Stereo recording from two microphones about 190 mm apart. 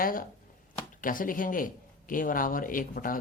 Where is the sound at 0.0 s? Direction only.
50° left (ahead or behind).